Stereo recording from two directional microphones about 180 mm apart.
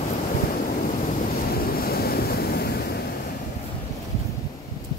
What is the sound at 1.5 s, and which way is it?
Waves, 60° left (ahead or behind).